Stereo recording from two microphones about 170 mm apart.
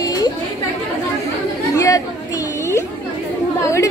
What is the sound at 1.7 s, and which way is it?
Chatter, 20° left (ahead or behind).